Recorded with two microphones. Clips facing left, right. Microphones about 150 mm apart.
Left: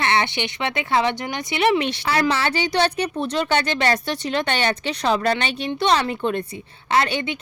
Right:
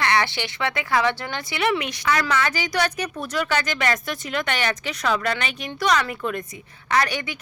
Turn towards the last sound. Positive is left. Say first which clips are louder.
# left 2 dB
turn(degrees=25)  # may be behind; listen again after turning